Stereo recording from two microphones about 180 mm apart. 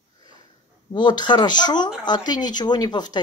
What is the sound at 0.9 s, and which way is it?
Speech, 25° left (ahead or behind).